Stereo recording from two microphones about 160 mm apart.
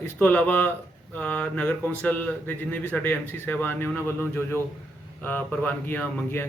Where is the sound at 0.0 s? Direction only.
10° left (ahead or behind).